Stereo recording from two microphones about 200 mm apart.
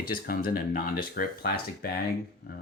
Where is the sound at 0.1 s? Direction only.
45° left (ahead or behind).